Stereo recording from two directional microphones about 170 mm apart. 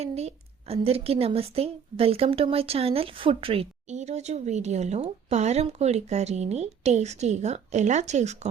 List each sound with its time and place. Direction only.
0.0 s a woman's voice: 40° right (ahead or behind)